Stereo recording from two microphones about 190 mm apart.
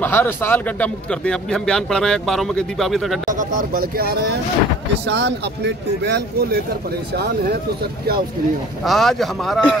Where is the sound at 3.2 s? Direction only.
45° right (ahead or behind); by 5.7 s 65° right (ahead or behind).